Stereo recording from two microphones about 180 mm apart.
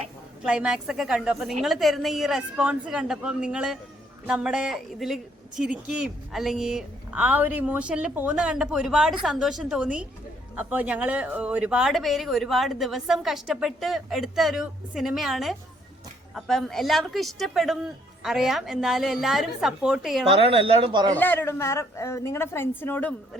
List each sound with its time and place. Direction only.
0.4 s speech: 5° right (ahead or behind)
20.3 s speech: 30° right (ahead or behind)
21.2 s a woman's voice: 10° left (ahead or behind)